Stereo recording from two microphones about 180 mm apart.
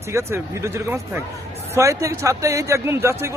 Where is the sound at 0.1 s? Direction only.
15° right (ahead or behind).